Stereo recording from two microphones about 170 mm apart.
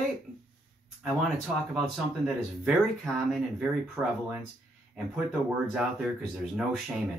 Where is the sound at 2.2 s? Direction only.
Centre (ahead or behind).